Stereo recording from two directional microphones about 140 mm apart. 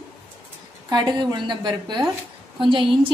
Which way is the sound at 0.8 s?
30° right (ahead or behind).